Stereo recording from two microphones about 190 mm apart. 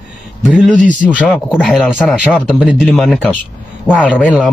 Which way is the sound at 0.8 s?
45° left (ahead or behind).